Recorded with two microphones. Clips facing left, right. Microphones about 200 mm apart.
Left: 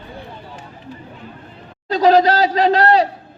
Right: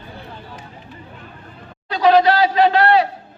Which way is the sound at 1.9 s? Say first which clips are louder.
Left 1 dB; 40° left (ahead or behind).